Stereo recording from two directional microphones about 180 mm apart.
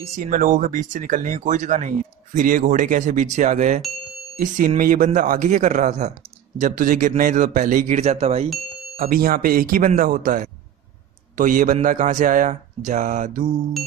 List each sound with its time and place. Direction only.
0.0 s speech: 45° right (ahead or behind)
8.9 s speech: 55° right (ahead or behind)